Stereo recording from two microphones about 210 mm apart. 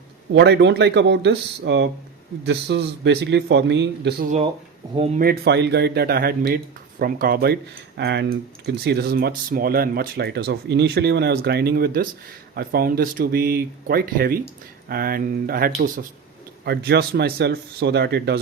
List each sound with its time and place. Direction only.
0.3 s speech: 55° right (ahead or behind)